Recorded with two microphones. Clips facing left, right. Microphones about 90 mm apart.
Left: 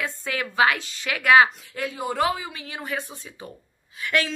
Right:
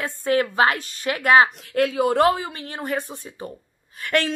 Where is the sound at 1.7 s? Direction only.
90° right.